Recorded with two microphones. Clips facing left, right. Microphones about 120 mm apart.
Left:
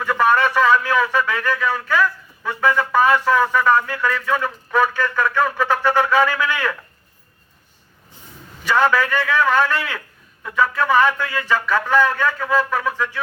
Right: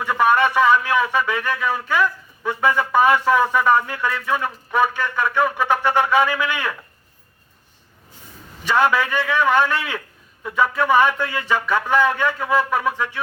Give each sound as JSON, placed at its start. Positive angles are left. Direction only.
{"t": 0.0, "sound": "a man's voice", "side_deg": -15}
{"t": 8.7, "sound": "speech", "side_deg": -15}